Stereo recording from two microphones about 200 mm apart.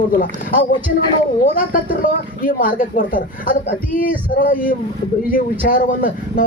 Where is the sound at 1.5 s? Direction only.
45° left (ahead or behind).